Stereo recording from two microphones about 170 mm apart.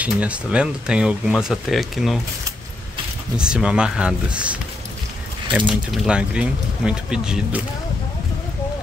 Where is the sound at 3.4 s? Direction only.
5° right (ahead or behind).